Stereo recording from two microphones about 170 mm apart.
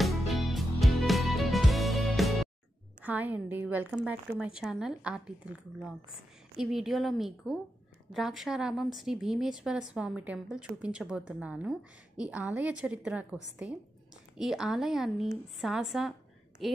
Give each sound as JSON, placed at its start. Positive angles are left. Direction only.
{"t": 0.3, "sound": "music", "side_deg": 0}
{"t": 3.0, "sound": "a woman's voice", "side_deg": -10}